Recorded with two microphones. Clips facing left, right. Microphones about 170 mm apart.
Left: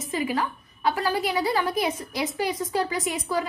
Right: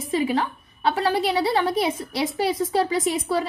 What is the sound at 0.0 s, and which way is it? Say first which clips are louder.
A woman's voice: right 4 dB; 30° right (ahead or behind).